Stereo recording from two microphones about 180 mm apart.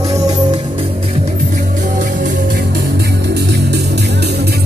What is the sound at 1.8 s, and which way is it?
Music, 45° right (ahead or behind).